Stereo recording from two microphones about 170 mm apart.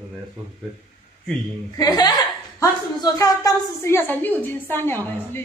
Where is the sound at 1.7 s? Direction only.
25° left (ahead or behind).